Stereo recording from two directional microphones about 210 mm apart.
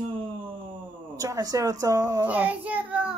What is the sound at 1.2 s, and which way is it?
A child's voice, 15° right (ahead or behind).